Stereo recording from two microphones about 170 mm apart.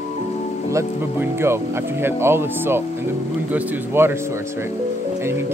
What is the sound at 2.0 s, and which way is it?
Speech, 15° right (ahead or behind).